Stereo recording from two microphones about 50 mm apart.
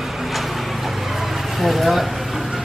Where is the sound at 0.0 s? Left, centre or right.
Centre.